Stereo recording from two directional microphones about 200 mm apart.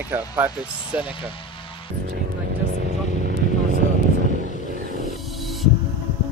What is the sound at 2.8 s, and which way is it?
Vehicle, 45° right (ahead or behind).